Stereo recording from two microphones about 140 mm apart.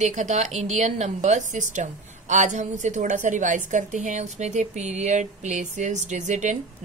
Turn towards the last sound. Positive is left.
turn(degrees=-60)  # may be behind; listen again after turning